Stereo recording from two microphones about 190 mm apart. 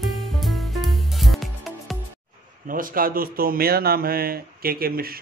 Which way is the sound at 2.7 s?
50° right (ahead or behind).